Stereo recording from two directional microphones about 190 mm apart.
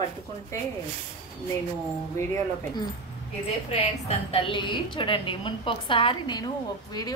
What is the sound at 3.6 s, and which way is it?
A woman's voice, 30° left (ahead or behind).